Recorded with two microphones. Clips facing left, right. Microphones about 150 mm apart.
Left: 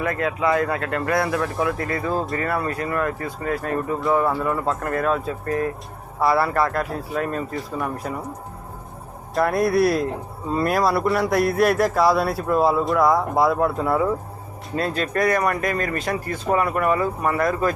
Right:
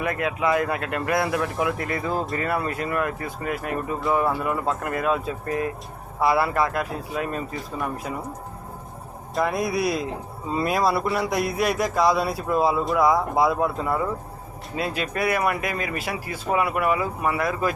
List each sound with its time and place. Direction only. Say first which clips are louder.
0.0 s speech: left 2 dB; 20° right (ahead or behind)
9.3 s speech: left 5 dB; centre (ahead or behind)